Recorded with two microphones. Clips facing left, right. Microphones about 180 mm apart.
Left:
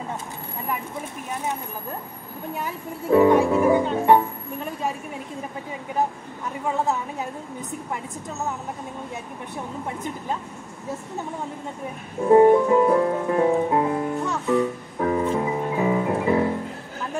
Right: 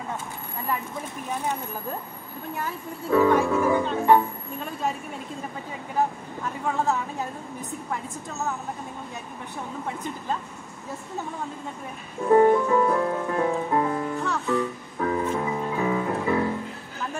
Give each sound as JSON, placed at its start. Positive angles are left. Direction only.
{"t": 2.6, "sound": "speech", "side_deg": 20}
{"t": 12.3, "sound": "music", "side_deg": 25}